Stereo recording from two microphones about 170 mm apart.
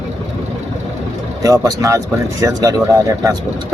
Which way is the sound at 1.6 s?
20° right (ahead or behind).